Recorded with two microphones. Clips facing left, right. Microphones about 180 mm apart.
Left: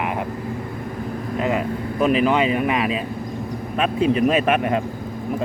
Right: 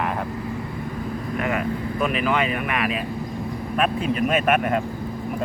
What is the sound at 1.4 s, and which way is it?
Speech, 25° left (ahead or behind).